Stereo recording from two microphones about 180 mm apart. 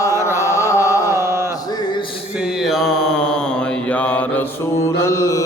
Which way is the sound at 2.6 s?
Centre (ahead or behind).